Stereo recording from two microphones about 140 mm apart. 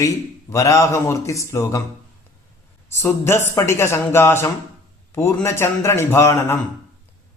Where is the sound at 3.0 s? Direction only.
20° left (ahead or behind).